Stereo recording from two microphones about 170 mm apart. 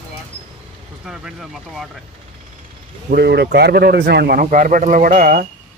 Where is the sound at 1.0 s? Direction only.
5° right (ahead or behind).